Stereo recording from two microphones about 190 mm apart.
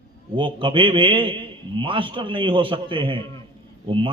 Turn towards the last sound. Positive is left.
turn(degrees=-25)  # may be behind; listen again after turning